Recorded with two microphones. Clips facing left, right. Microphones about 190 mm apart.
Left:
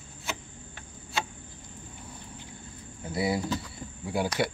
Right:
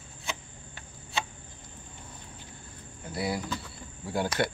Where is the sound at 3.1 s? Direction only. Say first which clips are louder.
Left 4 dB; 25° left (ahead or behind).